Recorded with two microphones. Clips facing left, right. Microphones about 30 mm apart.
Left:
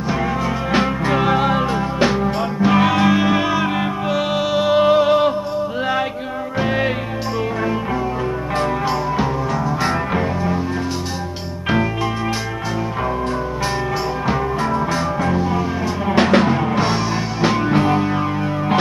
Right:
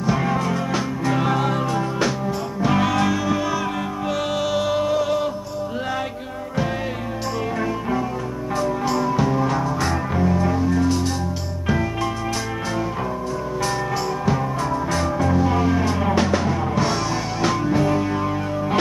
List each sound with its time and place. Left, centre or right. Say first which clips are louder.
0.7 s music: left 5 dB; left
3.2 s music: left 5 dB; left
4.1 s music: left 3 dB; centre
4.7 s music: left 7 dB; left
8.8 s music: left 1 dB; left
10.3 s music: even; centre
14.3 s music: left 3 dB; left
16.2 s music: left 10 dB; left
16.7 s music: left 3 dB; left
17.6 s music: left 2 dB; left